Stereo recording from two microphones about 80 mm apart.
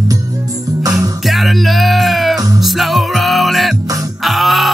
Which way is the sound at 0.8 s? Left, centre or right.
Right.